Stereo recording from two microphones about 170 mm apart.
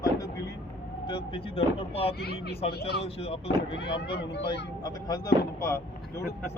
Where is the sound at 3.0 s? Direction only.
35° left (ahead or behind).